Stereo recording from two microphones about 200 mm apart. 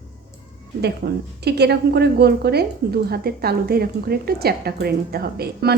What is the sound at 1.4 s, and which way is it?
A woman's voice, 55° right (ahead or behind).